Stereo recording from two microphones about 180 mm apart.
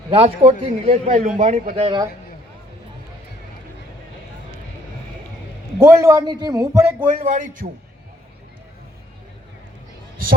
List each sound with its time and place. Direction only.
0.1 s a man's voice: 30° right (ahead or behind)
5.8 s a man's voice: 15° right (ahead or behind)
7.2 s a man's voice: 45° right (ahead or behind)